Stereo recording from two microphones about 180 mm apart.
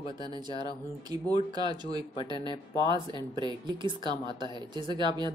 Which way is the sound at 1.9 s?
25° right (ahead or behind).